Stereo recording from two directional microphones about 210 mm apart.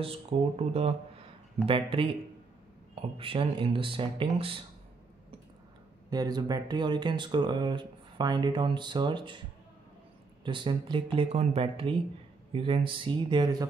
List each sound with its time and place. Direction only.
0.0 s speech: 25° right (ahead or behind)
6.0 s speech: 20° right (ahead or behind)
10.4 s speech: 25° right (ahead or behind)